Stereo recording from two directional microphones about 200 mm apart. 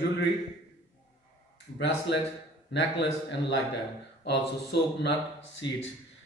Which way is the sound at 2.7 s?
60° left (ahead or behind).